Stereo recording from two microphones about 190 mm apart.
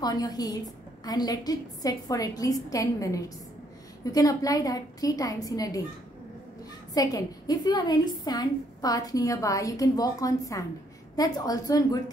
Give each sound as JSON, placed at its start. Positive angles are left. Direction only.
{"t": 0.0, "sound": "a woman's voice", "side_deg": 20}
{"t": 6.9, "sound": "a woman's voice", "side_deg": 20}